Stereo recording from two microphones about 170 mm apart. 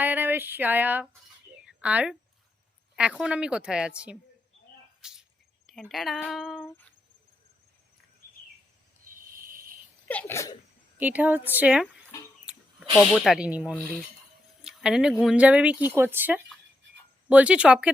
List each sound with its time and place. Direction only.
0.0 s a sound: 10° right (ahead or behind)
2.9 s a woman's voice: 5° right (ahead or behind)
5.0 s cricket: 5° right (ahead or behind)
5.6 s a woman's voice: centre (ahead or behind)
9.0 s cricket: 55° right (ahead or behind)
10.1 s sneeze: 10° left (ahead or behind)
11.0 s a woman's voice: 10° right (ahead or behind)
12.1 s a sound: 20° left (ahead or behind)
13.0 s a woman's voice: centre (ahead or behind)